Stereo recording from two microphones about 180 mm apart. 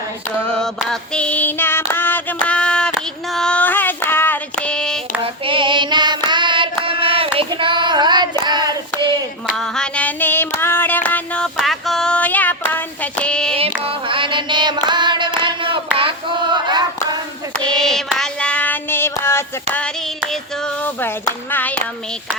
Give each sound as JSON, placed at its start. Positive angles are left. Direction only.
{"t": 0.4, "sound": "female singing", "side_deg": 5}
{"t": 1.9, "sound": "child singing", "side_deg": 10}
{"t": 5.2, "sound": "child singing", "side_deg": -30}
{"t": 9.5, "sound": "a sound", "side_deg": 0}
{"t": 13.6, "sound": "carnatic music", "side_deg": -30}
{"t": 15.4, "sound": "a sound", "side_deg": -30}
{"t": 17.5, "sound": "child singing", "side_deg": 5}
{"t": 19.7, "sound": "clapping", "side_deg": 5}